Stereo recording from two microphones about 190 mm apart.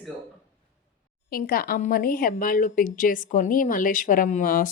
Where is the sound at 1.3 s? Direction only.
50° left (ahead or behind).